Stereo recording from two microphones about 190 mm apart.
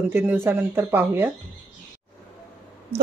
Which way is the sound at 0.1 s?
10° right (ahead or behind).